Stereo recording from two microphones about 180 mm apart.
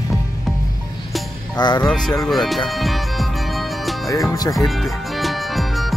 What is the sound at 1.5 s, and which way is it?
Speech, 25° left (ahead or behind).